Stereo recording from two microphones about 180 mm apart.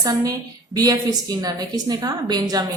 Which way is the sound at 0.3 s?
20° right (ahead or behind).